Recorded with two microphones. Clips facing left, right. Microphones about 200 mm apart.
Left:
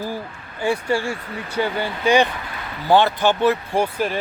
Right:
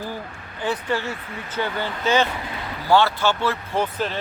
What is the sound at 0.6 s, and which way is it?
Speech, 10° left (ahead or behind).